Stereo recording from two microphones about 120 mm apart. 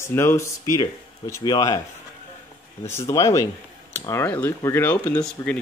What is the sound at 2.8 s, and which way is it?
Speech, 25° left (ahead or behind).